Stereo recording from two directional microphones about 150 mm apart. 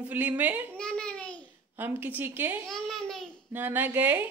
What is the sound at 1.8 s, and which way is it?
Speech, 10° right (ahead or behind).